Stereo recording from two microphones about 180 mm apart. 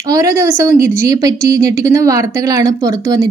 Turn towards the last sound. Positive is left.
turn(degrees=-20)  # may be behind; listen again after turning